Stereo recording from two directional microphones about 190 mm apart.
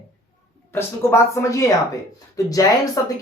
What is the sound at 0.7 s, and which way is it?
Speech, 15° left (ahead or behind).